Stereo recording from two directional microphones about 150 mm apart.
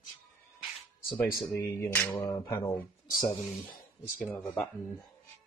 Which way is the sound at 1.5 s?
20° left (ahead or behind).